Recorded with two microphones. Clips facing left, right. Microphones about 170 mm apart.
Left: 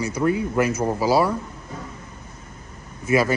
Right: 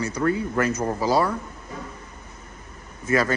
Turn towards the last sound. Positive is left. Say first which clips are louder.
# left 2 dB
turn(degrees=10)  # may be behind; listen again after turning